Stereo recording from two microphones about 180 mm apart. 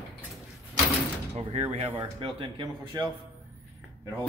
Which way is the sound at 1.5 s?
35° right (ahead or behind).